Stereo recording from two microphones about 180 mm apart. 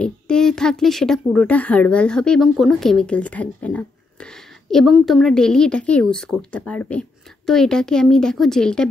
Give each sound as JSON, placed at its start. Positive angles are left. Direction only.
{"t": 0.0, "sound": "speech", "side_deg": 5}